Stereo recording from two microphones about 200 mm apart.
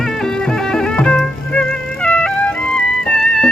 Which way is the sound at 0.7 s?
5° left (ahead or behind).